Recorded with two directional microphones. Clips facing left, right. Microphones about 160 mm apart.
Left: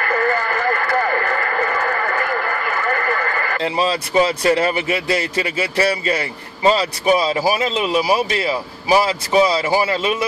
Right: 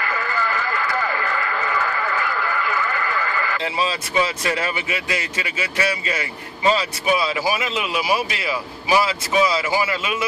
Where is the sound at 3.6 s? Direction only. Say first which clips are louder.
Left 5 dB; 40° left (ahead or behind).